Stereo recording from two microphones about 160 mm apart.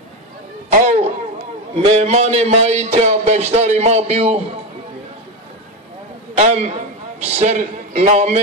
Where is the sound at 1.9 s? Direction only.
45° right (ahead or behind).